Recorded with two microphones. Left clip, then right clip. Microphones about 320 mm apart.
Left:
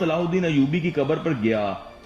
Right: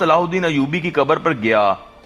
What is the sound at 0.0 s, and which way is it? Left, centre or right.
Speech, right.